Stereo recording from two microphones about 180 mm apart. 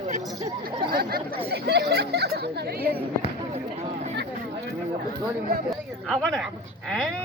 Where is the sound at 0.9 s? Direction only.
55° right (ahead or behind).